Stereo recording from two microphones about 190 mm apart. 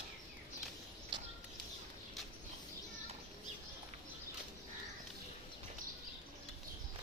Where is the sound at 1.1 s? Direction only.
25° right (ahead or behind).